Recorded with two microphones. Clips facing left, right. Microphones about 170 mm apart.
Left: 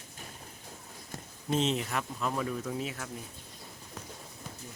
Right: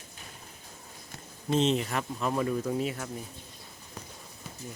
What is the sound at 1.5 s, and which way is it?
Speech, 5° left (ahead or behind).